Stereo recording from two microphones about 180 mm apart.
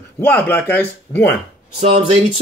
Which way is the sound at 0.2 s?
10° left (ahead or behind).